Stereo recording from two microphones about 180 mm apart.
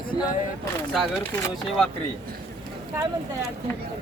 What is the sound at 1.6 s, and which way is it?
Speech, centre (ahead or behind).